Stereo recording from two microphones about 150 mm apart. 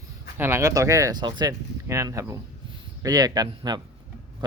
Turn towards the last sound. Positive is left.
turn(degrees=-25)  # may be behind; listen again after turning